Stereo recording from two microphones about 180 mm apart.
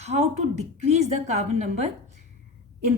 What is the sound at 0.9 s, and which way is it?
Speech, 40° right (ahead or behind).